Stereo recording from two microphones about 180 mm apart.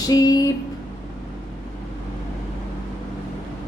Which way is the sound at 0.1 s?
20° left (ahead or behind).